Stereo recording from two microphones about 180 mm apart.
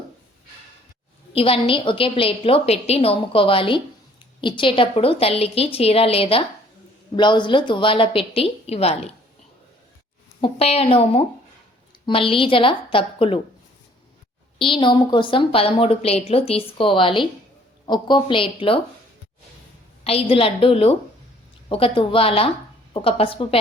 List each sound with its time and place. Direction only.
1.3 s a woman's voice: 30° left (ahead or behind)
10.4 s a woman's voice: 35° left (ahead or behind)
14.6 s a woman's voice: 25° left (ahead or behind)
20.1 s a woman's voice: 30° left (ahead or behind)